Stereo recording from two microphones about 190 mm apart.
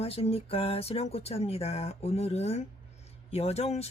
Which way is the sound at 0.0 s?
30° left (ahead or behind).